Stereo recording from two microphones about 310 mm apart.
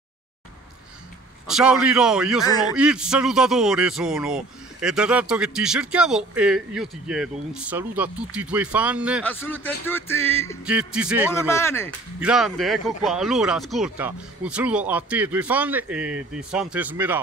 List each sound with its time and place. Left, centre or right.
1.5 s a man's voice: centre
10.6 s a man's voice: centre
11.4 s a man's voice: centre